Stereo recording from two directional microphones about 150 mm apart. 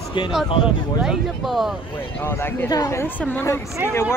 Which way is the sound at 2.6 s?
25° left (ahead or behind).